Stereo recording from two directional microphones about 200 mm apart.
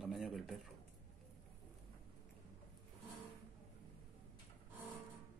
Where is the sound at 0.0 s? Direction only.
Centre (ahead or behind).